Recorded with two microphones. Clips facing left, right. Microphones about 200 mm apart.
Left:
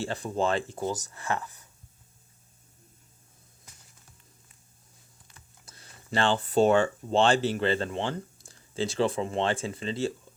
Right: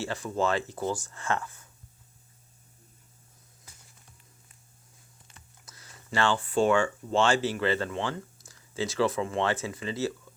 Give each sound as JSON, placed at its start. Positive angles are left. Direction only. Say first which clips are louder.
{"t": 0.0, "sound": "speech", "louder": "even", "side_deg": 30}
{"t": 1.1, "sound": "speech", "louder": "right 1 dB", "side_deg": 15}
{"t": 5.6, "sound": "speech", "louder": "left 1 dB", "side_deg": 30}